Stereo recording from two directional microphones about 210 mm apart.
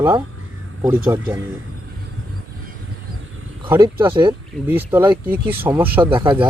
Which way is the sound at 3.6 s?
20° right (ahead or behind).